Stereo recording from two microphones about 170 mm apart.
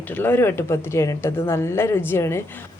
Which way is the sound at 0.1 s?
10° left (ahead or behind).